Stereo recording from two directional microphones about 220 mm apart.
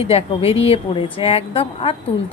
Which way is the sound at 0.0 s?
25° left (ahead or behind).